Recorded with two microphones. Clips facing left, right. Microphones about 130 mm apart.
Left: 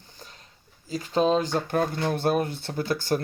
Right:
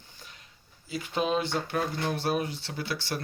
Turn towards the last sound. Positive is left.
turn(degrees=45)  # may be behind; listen again after turning